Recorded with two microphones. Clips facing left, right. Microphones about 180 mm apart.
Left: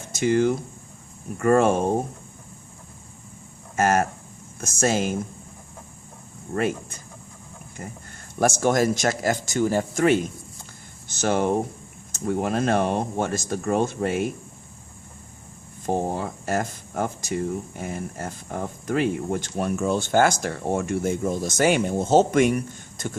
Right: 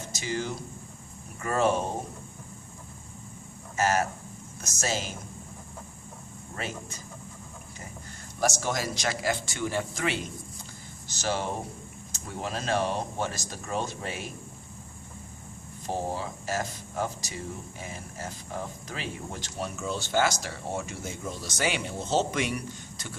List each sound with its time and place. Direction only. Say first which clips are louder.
0.1 s speech: left 13 dB; 55° left (ahead or behind)
3.8 s speech: left 5 dB; 50° left (ahead or behind)
6.5 s speech: left 12 dB; 50° left (ahead or behind)
8.4 s speech: left 9 dB; 55° left (ahead or behind)
15.9 s speech: left 6 dB; 55° left (ahead or behind)